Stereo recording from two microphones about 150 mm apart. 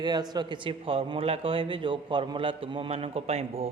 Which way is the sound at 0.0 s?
30° right (ahead or behind).